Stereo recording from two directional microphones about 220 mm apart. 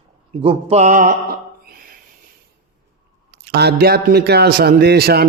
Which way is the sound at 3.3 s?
50° right (ahead or behind).